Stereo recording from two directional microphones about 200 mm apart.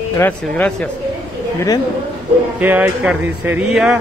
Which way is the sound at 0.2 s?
5° left (ahead or behind).